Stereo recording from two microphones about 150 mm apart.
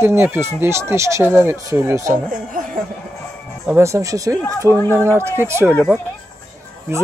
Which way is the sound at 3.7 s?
20° right (ahead or behind).